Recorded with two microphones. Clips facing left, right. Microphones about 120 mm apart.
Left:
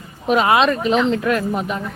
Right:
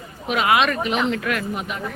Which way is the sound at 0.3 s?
35° left (ahead or behind).